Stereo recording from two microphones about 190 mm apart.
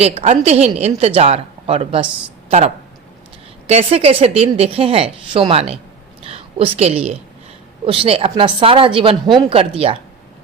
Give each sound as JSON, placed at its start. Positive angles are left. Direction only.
{"t": 0.0, "sound": "a woman's voice", "side_deg": -30}